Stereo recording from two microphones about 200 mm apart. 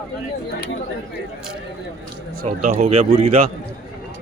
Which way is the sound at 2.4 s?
35° right (ahead or behind).